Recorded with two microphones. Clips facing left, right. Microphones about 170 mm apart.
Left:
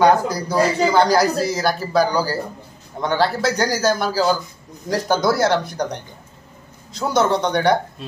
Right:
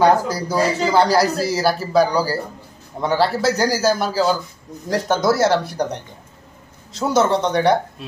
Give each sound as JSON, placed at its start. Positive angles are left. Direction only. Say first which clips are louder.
{"t": 0.0, "sound": "a man's voice", "louder": "even", "side_deg": -5}